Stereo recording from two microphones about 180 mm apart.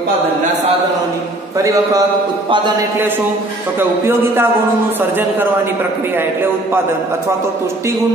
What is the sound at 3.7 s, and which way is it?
A man's voice, 15° right (ahead or behind).